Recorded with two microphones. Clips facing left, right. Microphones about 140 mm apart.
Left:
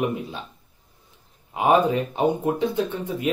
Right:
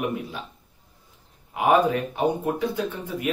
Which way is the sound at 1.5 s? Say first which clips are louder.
Left 1 dB; 25° left (ahead or behind).